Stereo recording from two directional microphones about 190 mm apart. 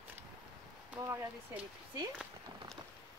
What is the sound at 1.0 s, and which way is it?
Speech, 10° right (ahead or behind).